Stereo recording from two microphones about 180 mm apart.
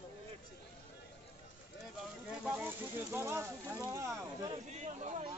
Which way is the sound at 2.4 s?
5° right (ahead or behind).